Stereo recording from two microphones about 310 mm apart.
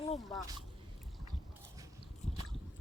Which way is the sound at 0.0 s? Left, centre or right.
Centre.